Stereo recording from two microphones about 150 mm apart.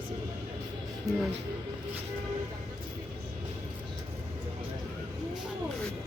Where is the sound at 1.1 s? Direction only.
25° right (ahead or behind).